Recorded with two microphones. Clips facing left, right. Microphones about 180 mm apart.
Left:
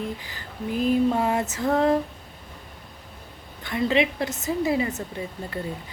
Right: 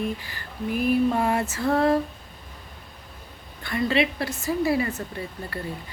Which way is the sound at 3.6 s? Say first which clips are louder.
Left 1 dB; 15° left (ahead or behind).